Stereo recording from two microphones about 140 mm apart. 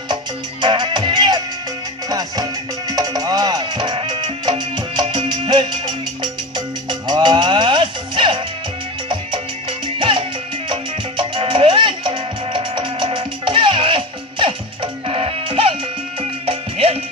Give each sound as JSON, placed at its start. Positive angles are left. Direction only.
{"t": 0.6, "sound": "music", "side_deg": -35}